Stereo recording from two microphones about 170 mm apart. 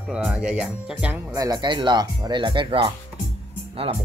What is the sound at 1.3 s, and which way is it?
Speech, 20° right (ahead or behind).